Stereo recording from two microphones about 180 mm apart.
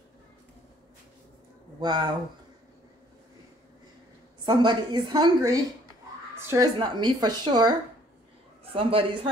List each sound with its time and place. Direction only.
1.8 s a woman's voice: 25° right (ahead or behind)
4.5 s a woman's voice: 25° right (ahead or behind)
8.7 s a man's voice: 30° right (ahead or behind)